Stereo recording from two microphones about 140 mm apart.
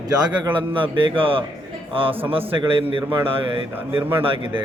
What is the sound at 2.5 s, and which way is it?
A man's voice, 35° right (ahead or behind).